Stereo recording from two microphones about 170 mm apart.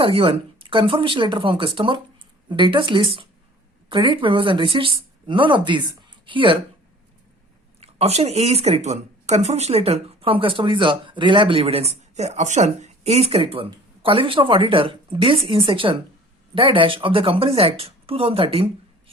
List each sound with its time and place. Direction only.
0.0 s speech: 35° right (ahead or behind)
7.8 s speech: 40° right (ahead or behind)